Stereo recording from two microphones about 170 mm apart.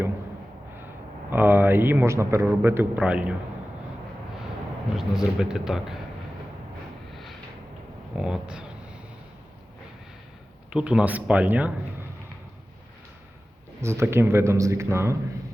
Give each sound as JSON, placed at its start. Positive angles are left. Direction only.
{"t": 1.3, "sound": "a man's voice", "side_deg": -10}
{"t": 4.9, "sound": "speech", "side_deg": -5}
{"t": 8.1, "sound": "speech", "side_deg": -5}
{"t": 10.7, "sound": "a man's voice", "side_deg": -5}
{"t": 13.8, "sound": "a man's voice", "side_deg": -15}